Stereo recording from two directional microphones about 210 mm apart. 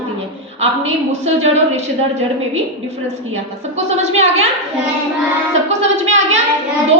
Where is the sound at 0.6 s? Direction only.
30° right (ahead or behind).